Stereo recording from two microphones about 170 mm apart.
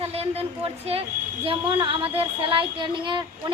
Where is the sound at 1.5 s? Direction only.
30° right (ahead or behind).